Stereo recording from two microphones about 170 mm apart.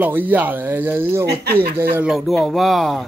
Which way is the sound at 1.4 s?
70° right (ahead or behind).